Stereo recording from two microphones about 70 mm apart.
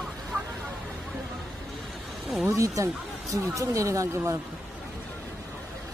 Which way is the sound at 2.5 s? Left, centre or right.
Right.